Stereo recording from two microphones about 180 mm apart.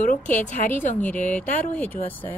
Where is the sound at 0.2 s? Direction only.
10° left (ahead or behind).